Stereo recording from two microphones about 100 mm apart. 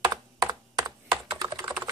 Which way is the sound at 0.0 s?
40° right (ahead or behind).